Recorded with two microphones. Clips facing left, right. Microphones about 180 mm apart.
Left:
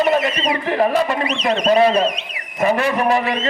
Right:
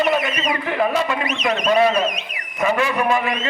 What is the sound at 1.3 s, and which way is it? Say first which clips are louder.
A man's voice: left 2 dB; 30° left (ahead or behind).